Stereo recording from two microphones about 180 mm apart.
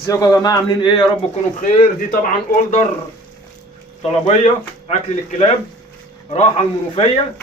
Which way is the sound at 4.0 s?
35° left (ahead or behind).